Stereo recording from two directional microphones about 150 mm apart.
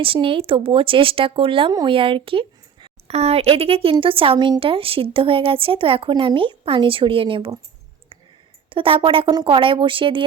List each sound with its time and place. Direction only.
0.0 s speech: 35° right (ahead or behind)
8.7 s speech: 35° right (ahead or behind)